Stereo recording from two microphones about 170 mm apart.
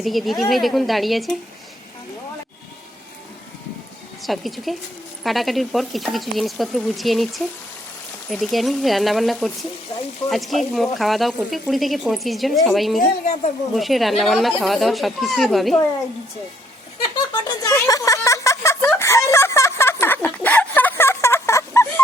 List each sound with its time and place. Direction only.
0.0 s speech: centre (ahead or behind)
4.2 s speech: centre (ahead or behind)
17.3 s a sound: 20° left (ahead or behind)